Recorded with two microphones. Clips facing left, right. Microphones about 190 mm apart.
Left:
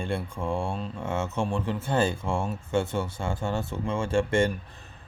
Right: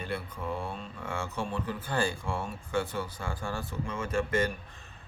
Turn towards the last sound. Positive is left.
turn(degrees=25)  # may be behind; listen again after turning